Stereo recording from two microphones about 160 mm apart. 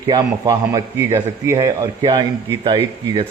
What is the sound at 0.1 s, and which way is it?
A man's voice, 25° right (ahead or behind).